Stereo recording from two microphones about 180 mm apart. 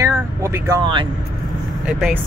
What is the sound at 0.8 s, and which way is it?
Speech, 30° right (ahead or behind).